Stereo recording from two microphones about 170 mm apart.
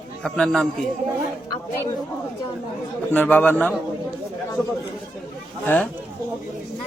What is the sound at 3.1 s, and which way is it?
Speech, 10° left (ahead or behind).